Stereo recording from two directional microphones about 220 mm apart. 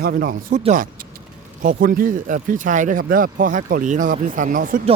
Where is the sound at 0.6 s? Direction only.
30° right (ahead or behind).